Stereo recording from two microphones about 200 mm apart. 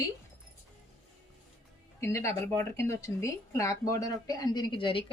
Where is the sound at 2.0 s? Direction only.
15° left (ahead or behind).